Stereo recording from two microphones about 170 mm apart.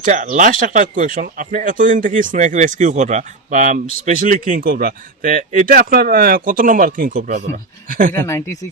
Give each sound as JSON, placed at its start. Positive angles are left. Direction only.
{"t": 0.0, "sound": "speech", "side_deg": -50}
{"t": 8.2, "sound": "speech", "side_deg": 15}